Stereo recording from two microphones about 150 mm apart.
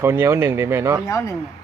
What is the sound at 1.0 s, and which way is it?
Speech, 20° left (ahead or behind).